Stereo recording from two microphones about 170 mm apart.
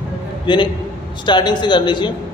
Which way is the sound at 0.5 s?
25° left (ahead or behind).